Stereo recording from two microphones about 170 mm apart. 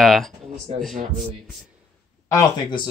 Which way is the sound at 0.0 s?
Centre (ahead or behind).